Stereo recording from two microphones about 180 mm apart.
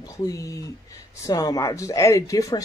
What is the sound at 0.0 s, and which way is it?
Speech, 20° left (ahead or behind).